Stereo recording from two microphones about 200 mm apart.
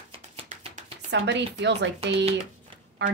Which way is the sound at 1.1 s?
60° right (ahead or behind).